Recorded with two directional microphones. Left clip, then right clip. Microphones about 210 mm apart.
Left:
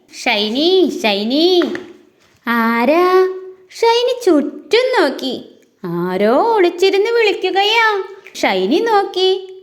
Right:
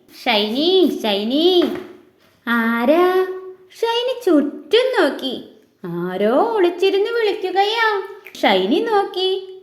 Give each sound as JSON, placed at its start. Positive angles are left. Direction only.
{"t": 0.2, "sound": "a woman's voice", "side_deg": 35}
{"t": 2.4, "sound": "female singing", "side_deg": 35}
{"t": 3.8, "sound": "a woman's voice", "side_deg": 30}